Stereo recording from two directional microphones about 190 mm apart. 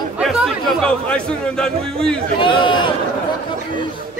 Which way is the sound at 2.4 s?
25° left (ahead or behind).